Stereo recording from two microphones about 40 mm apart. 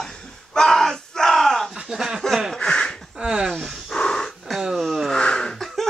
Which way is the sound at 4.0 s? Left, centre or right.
Centre.